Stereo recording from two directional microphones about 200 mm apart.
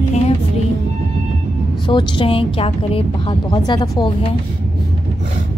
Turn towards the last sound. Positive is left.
turn(degrees=20)  # may be behind; listen again after turning